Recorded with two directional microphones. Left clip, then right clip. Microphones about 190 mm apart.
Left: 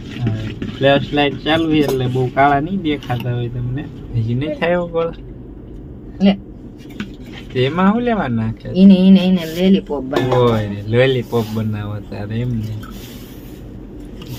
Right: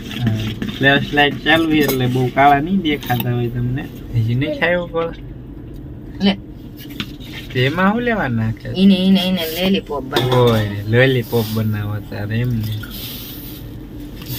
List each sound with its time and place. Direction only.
0.8 s speech: centre (ahead or behind)
7.5 s speech: 5° left (ahead or behind)
8.7 s speech: 55° left (ahead or behind)
10.4 s speech: centre (ahead or behind)